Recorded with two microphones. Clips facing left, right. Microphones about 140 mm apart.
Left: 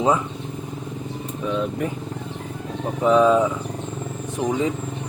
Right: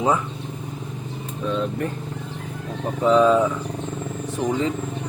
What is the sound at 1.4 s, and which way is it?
Speech, 5° left (ahead or behind).